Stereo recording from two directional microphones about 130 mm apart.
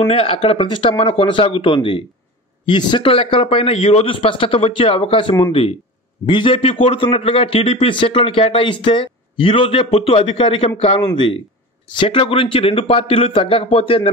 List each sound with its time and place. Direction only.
0.0 s a man's voice: 45° left (ahead or behind)
11.9 s a man's voice: 40° left (ahead or behind)